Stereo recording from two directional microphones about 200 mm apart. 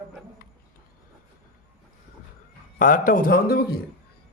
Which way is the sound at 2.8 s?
40° left (ahead or behind).